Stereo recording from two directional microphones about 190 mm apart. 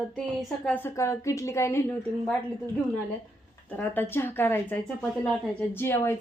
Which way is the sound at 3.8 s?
10° left (ahead or behind).